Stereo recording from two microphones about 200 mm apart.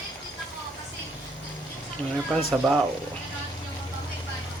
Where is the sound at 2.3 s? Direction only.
Centre (ahead or behind).